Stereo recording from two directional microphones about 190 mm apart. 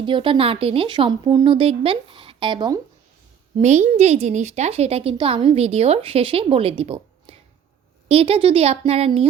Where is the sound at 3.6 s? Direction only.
35° right (ahead or behind).